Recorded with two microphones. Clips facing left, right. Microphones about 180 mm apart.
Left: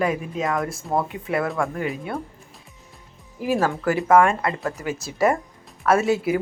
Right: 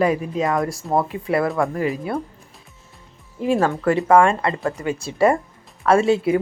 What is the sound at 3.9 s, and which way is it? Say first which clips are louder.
Speech: right 1 dB; 5° left (ahead or behind).